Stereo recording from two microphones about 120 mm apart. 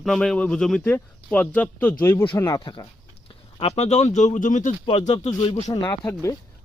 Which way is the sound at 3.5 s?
60° left (ahead or behind).